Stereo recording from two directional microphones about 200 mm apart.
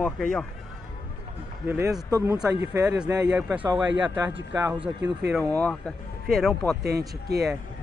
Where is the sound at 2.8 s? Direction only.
5° right (ahead or behind).